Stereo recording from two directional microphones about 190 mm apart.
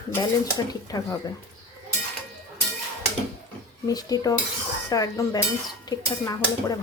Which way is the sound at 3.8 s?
20° left (ahead or behind).